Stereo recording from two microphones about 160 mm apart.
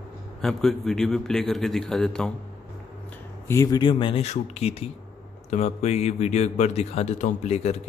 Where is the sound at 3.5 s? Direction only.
20° left (ahead or behind); by 7.8 s 40° left (ahead or behind).